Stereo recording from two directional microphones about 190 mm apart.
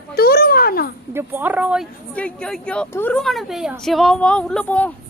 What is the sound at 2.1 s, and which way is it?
A woman's voice, 5° left (ahead or behind).